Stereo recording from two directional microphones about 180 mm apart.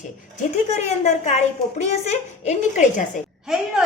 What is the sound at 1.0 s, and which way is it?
Speech, 40° left (ahead or behind).